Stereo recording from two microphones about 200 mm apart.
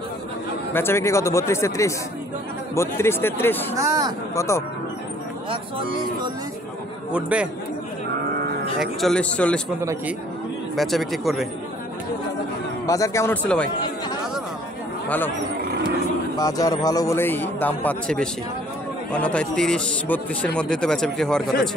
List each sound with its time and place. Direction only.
0.7 s a man's voice: 10° left (ahead or behind)
3.7 s a man's voice: 15° right (ahead or behind)
4.4 s a man's voice: 15° left (ahead or behind)
5.5 s speech: 25° right (ahead or behind)
7.1 s a man's voice: 5° right (ahead or behind)
9.0 s speech: 5° left (ahead or behind)
10.8 s speech: centre (ahead or behind)
12.8 s a man's voice: 15° left (ahead or behind)
15.0 s a man's voice: 10° left (ahead or behind)
16.3 s a man's voice: 20° left (ahead or behind)